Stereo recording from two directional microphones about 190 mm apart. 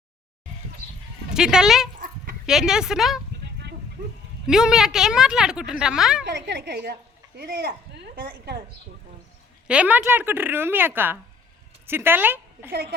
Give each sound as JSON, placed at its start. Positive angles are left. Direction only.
{"t": 1.3, "sound": "a woman's voice", "side_deg": -5}
{"t": 4.4, "sound": "a woman's voice", "side_deg": -5}
{"t": 6.2, "sound": "a woman's voice", "side_deg": -65}
{"t": 9.6, "sound": "a woman's voice", "side_deg": -5}